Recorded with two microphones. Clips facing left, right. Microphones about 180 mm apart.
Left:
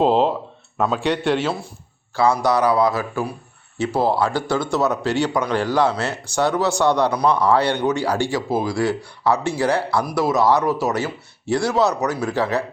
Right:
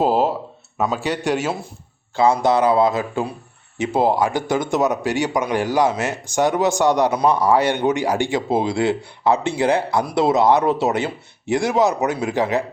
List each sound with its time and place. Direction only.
0.0 s a man's voice: 5° right (ahead or behind)
2.1 s a man's voice: 20° right (ahead or behind)